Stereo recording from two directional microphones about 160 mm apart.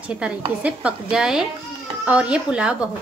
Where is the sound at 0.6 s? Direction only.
10° right (ahead or behind).